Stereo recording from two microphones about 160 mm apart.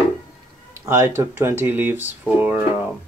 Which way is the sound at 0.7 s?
15° right (ahead or behind).